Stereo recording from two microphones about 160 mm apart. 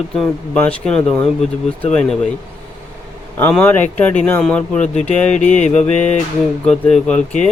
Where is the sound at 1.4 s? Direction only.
45° left (ahead or behind).